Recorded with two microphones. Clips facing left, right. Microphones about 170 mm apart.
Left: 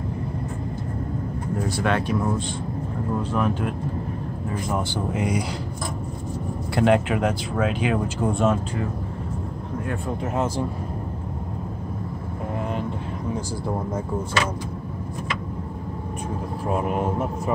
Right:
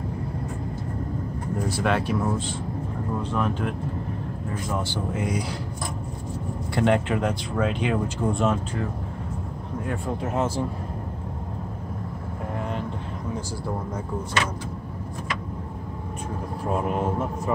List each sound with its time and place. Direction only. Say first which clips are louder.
1.7 s speech: left 1 dB; 5° right (ahead or behind)
5.1 s speech: left 3 dB; 15° left (ahead or behind)
6.7 s speech: left 2 dB; 5° left (ahead or behind)
9.8 s speech: even; centre (ahead or behind)
16.6 s speech: left 1 dB; 5° left (ahead or behind)